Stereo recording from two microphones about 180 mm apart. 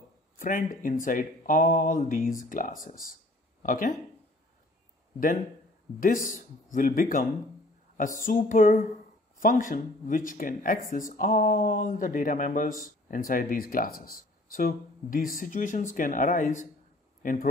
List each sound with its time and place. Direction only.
0.4 s speech: 50° left (ahead or behind)
6.2 s speech: 45° left (ahead or behind)